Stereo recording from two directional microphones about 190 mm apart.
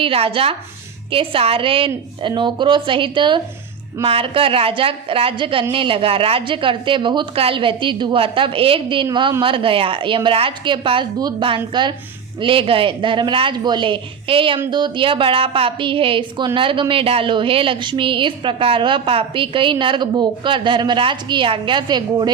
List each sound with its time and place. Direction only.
0.0 s a woman's voice: 30° right (ahead or behind)